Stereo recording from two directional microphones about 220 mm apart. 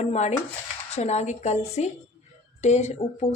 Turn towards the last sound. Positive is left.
turn(degrees=30)  # may be behind; listen again after turning